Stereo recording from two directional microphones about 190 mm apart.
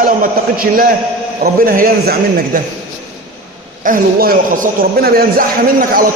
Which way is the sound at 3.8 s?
50° right (ahead or behind).